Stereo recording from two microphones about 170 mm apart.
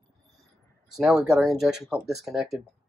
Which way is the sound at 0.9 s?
Centre (ahead or behind).